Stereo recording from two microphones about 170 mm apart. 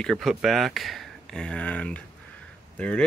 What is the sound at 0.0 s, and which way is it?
Speech, centre (ahead or behind).